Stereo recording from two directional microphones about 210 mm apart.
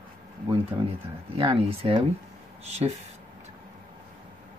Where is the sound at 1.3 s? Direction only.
25° right (ahead or behind).